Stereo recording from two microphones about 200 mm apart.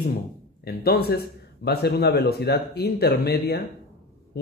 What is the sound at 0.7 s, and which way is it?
A man's voice, 50° left (ahead or behind).